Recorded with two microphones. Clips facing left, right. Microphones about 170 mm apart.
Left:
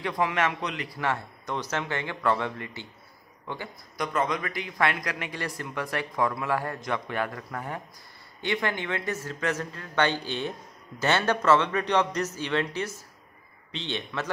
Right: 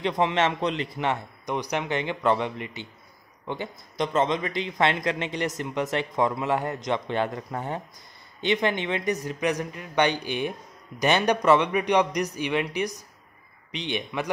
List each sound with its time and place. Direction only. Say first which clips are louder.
0.0 s speech: right 3 dB; 25° right (ahead or behind)